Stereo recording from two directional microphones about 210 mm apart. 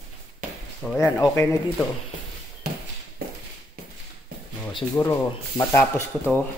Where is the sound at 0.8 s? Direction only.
5° left (ahead or behind).